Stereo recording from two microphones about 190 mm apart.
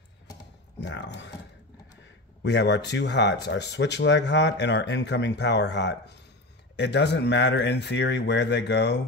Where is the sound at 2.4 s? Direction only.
65° left (ahead or behind).